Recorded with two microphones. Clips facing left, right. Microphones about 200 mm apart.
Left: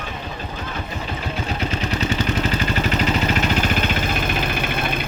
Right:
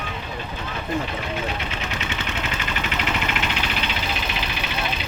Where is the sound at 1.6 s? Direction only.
40° left (ahead or behind).